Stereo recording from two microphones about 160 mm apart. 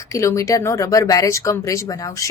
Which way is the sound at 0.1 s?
20° left (ahead or behind).